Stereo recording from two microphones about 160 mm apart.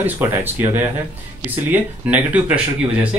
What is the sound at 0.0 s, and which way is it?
Speech, 10° right (ahead or behind).